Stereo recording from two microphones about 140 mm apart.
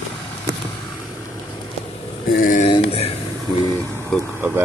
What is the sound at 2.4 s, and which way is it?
Speech, 65° left (ahead or behind).